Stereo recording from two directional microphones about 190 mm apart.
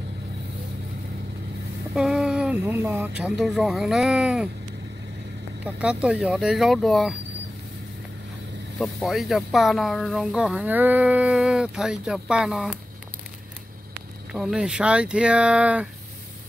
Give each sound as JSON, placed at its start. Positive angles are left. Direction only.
{"t": 2.0, "sound": "speech", "side_deg": 0}
{"t": 5.7, "sound": "speech", "side_deg": -5}
{"t": 8.7, "sound": "speech", "side_deg": 0}
{"t": 14.3, "sound": "speech", "side_deg": -5}